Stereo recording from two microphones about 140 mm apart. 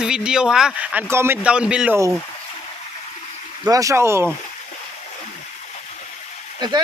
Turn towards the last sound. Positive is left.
turn(degrees=-30)  # may be behind; listen again after turning